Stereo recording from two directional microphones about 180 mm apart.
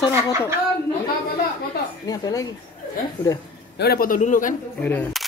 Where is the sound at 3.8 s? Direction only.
55° left (ahead or behind).